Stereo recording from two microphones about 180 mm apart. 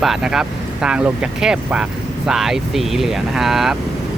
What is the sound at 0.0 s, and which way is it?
Speech, 5° right (ahead or behind).